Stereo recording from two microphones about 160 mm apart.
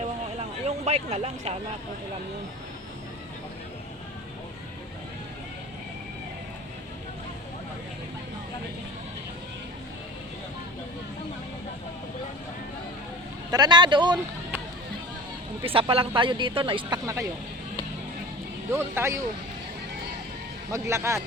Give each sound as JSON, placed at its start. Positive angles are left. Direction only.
{"t": 0.3, "sound": "a sound", "side_deg": -45}
{"t": 13.5, "sound": "a man's voice", "side_deg": -25}
{"t": 15.6, "sound": "speech", "side_deg": -35}
{"t": 18.7, "sound": "speech", "side_deg": -15}
{"t": 20.7, "sound": "speech", "side_deg": -20}